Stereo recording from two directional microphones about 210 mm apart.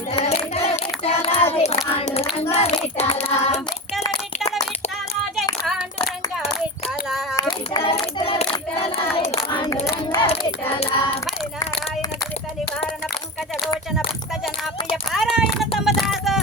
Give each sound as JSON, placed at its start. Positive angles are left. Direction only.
{"t": 0.1, "sound": "child singing", "side_deg": 30}
{"t": 2.0, "sound": "hands", "side_deg": 30}
{"t": 2.4, "sound": "child singing", "side_deg": 30}
{"t": 7.3, "sound": "child singing", "side_deg": 20}
{"t": 9.1, "sound": "hands", "side_deg": 25}
{"t": 10.1, "sound": "child singing", "side_deg": 25}
{"t": 15.1, "sound": "a sound", "side_deg": 0}